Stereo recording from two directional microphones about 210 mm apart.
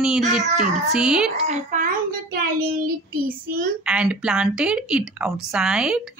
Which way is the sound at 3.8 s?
5° right (ahead or behind).